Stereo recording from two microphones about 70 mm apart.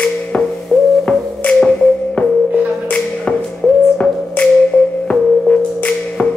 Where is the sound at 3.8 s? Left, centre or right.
Centre.